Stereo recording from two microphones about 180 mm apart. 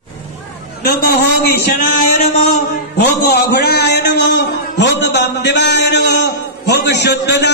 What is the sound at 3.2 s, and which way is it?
A man's voice, 65° left (ahead or behind).